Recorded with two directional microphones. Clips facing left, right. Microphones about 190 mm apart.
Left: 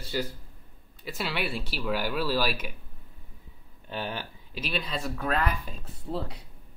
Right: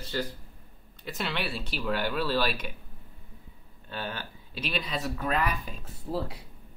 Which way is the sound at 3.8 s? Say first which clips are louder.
Left 2 dB; 15° left (ahead or behind).